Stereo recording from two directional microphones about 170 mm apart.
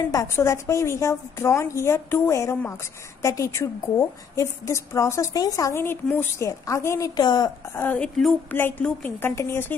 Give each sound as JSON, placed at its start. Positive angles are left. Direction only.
{"t": 0.1, "sound": "a woman's voice", "side_deg": 20}
{"t": 7.8, "sound": "a woman's voice", "side_deg": 10}